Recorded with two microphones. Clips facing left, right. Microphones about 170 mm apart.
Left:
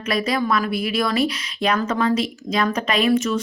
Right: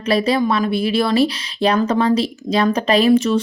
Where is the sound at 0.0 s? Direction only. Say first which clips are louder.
Right 5 dB; 30° right (ahead or behind).